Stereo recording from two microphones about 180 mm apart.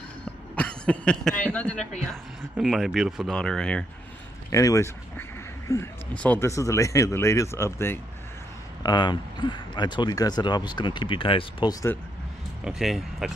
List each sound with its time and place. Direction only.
0.6 s speech: 5° left (ahead or behind)
4.5 s speech: 20° left (ahead or behind)
8.8 s speech: 25° left (ahead or behind)
12.6 s speech: centre (ahead or behind)